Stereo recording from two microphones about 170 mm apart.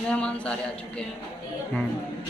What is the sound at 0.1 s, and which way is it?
Speech, 5° left (ahead or behind).